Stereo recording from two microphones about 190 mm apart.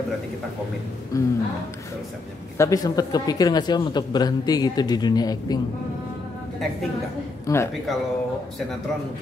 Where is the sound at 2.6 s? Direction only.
20° left (ahead or behind).